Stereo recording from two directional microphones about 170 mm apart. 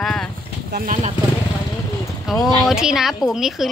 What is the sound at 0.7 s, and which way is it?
Speech, 50° right (ahead or behind).